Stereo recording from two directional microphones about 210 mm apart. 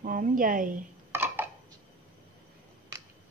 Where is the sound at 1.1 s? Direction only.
10° right (ahead or behind).